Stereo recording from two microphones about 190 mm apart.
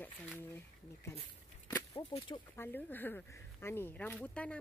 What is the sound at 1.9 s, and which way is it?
Speech, 30° left (ahead or behind).